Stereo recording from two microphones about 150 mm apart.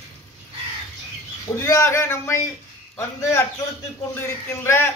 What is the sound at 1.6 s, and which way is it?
A man's voice, 20° left (ahead or behind).